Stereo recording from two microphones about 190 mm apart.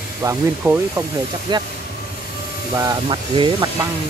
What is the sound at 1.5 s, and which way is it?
Speech, 25° right (ahead or behind).